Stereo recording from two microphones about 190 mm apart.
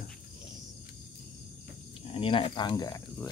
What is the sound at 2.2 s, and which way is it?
Speech, 30° left (ahead or behind).